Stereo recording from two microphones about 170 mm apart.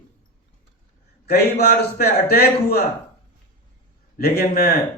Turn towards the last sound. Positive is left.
turn(degrees=65)  # may be behind; listen again after turning